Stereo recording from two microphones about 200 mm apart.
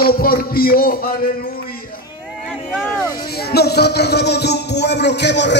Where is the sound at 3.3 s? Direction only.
55° left (ahead or behind).